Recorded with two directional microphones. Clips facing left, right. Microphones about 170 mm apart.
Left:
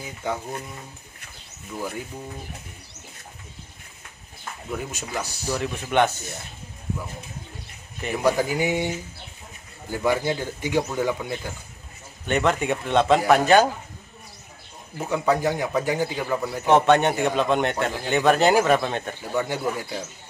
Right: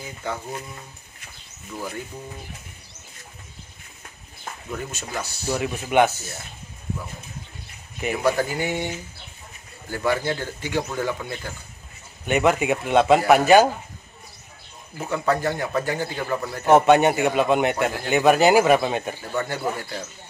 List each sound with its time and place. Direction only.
0.2 s a man's voice: 15° left (ahead or behind)
4.6 s a man's voice: 10° left (ahead or behind)
5.5 s a man's voice: 10° right (ahead or behind)
8.2 s a man's voice: 15° left (ahead or behind)
12.3 s a man's voice: 10° right (ahead or behind)
15.0 s a man's voice: 10° left (ahead or behind)
16.6 s a man's voice: 5° right (ahead or behind)
19.3 s a man's voice: 10° left (ahead or behind)